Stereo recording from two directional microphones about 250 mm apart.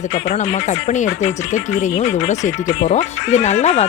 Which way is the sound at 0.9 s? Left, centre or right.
Left.